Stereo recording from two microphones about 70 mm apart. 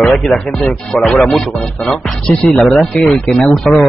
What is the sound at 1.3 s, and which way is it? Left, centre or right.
Speech, centre.